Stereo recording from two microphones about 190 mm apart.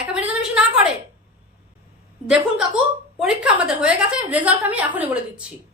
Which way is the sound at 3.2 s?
5° right (ahead or behind).